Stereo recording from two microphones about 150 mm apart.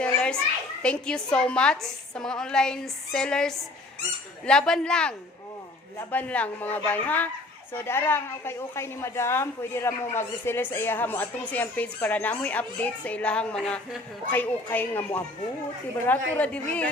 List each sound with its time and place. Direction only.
0.0 s children playing: 5° left (ahead or behind)
0.8 s a woman's voice: 5° left (ahead or behind)